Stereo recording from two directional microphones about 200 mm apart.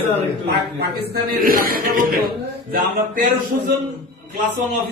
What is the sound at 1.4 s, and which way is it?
Speech, 45° right (ahead or behind).